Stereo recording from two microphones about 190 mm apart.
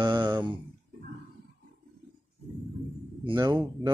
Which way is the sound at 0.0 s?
20° right (ahead or behind).